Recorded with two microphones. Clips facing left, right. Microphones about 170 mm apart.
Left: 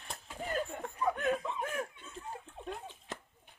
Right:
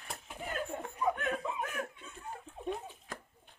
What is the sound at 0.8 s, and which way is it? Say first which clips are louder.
Chuckle: even; centre (ahead or behind).